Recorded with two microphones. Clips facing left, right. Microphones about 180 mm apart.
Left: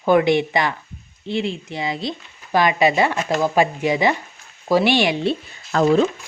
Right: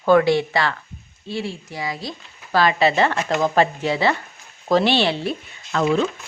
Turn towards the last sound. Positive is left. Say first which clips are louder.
# left 4 dB
turn(degrees=40)  # may be behind; listen again after turning